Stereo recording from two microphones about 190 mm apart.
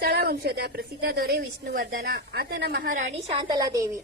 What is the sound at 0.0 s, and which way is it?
A woman's voice, 55° right (ahead or behind).